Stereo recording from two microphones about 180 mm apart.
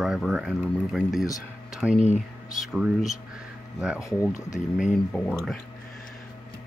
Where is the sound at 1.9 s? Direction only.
40° left (ahead or behind).